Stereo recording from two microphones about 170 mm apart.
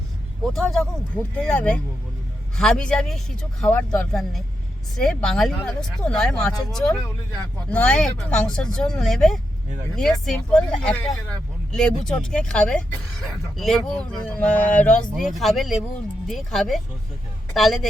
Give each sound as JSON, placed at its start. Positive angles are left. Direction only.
{"t": 0.5, "sound": "speech", "side_deg": 0}